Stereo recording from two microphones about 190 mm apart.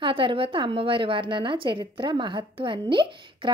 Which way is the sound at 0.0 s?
25° right (ahead or behind).